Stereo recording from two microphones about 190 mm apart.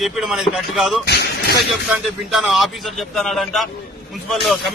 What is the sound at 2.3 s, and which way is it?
A man's voice, centre (ahead or behind).